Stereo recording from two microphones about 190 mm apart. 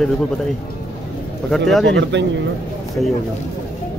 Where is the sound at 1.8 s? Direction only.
70° right (ahead or behind).